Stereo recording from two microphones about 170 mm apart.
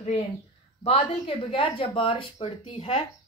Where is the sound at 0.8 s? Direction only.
35° left (ahead or behind).